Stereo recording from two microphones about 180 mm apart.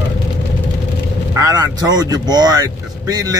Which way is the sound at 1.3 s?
20° right (ahead or behind).